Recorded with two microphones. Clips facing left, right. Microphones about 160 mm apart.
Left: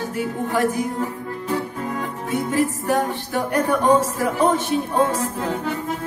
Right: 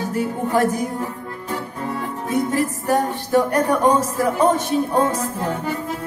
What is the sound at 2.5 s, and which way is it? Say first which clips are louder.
Music: even; 40° right (ahead or behind).